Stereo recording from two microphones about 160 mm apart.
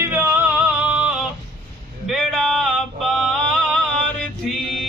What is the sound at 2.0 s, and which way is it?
Male singing, 5° left (ahead or behind).